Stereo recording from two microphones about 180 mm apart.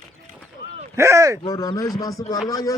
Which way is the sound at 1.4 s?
20° left (ahead or behind).